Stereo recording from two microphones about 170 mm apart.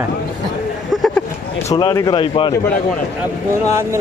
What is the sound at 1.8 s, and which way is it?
Speech, 25° left (ahead or behind).